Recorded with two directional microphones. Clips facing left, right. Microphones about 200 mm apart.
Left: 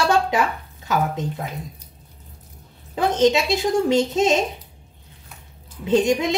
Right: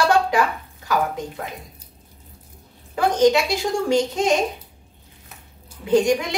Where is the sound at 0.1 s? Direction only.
20° left (ahead or behind).